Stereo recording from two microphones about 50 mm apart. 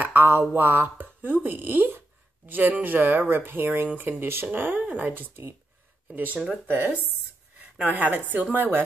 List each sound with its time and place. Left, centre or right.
0.0 s speech: right
7.8 s speech: right